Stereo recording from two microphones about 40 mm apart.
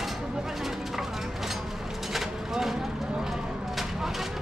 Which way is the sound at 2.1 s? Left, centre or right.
Centre.